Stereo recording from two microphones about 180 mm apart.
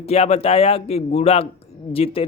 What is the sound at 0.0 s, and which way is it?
Speech, 35° left (ahead or behind).